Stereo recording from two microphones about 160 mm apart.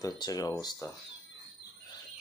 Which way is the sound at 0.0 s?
25° left (ahead or behind).